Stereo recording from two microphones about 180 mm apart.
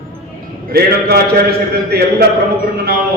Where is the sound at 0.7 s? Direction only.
60° right (ahead or behind).